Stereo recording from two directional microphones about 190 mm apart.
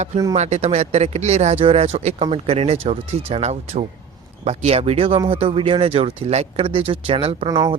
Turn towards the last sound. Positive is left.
turn(degrees=-25)  # may be behind; listen again after turning